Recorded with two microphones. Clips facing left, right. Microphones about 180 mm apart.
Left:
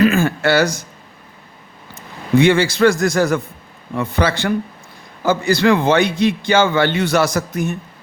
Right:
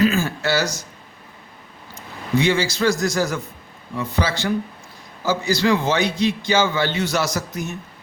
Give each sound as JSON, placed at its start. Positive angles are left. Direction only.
{"t": 0.0, "sound": "a man's voice", "side_deg": 60}
{"t": 2.4, "sound": "a man's voice", "side_deg": 60}